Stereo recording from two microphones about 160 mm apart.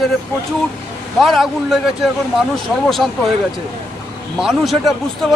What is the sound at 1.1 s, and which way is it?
Speech, centre (ahead or behind).